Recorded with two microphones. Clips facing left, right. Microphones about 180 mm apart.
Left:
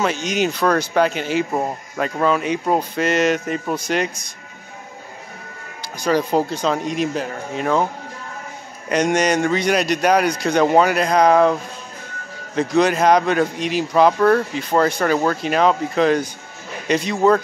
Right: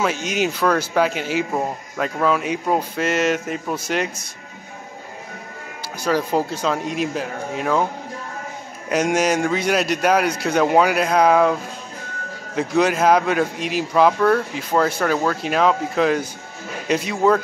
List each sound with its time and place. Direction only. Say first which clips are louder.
0.0 s speech: left 1 dB; 5° right (ahead or behind)
1.5 s speech: left 1 dB; 10° left (ahead or behind)
5.9 s speech: left 2 dB; 5° right (ahead or behind)
8.8 s speech: left 1 dB; 5° right (ahead or behind)
12.5 s speech: left 2 dB; 5° right (ahead or behind)